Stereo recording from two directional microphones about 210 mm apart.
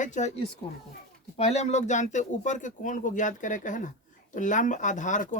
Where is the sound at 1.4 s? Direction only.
30° left (ahead or behind).